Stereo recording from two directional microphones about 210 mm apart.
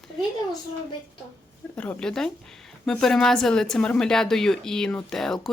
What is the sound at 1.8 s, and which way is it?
A woman's voice, 5° left (ahead or behind).